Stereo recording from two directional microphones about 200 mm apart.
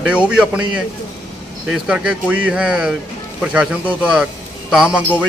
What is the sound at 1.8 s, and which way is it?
A man's voice, 5° right (ahead or behind).